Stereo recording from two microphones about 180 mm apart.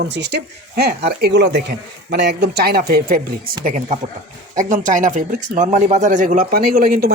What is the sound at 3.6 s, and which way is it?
A man's voice, 45° right (ahead or behind).